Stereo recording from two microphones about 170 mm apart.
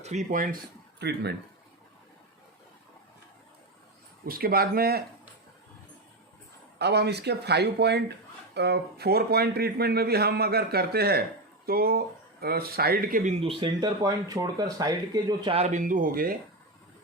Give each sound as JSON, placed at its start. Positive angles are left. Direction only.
{"t": 0.0, "sound": "speech", "side_deg": -45}
{"t": 4.3, "sound": "speech", "side_deg": -60}
{"t": 6.7, "sound": "speech", "side_deg": -75}